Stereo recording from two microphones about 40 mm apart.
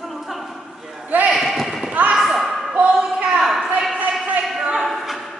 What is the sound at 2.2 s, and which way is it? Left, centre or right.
Slam, centre.